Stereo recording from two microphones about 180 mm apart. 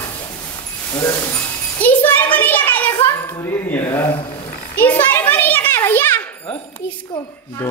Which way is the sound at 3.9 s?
15° left (ahead or behind).